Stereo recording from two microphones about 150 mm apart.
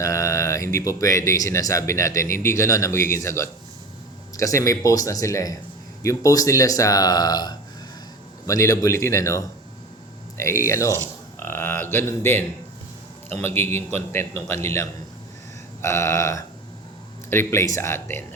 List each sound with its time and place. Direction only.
0.0 s speech: 20° left (ahead or behind)